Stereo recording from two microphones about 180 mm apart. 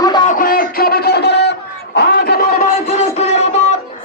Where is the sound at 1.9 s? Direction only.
60° left (ahead or behind).